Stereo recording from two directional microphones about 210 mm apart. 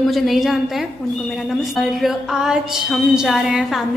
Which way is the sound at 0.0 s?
Centre (ahead or behind).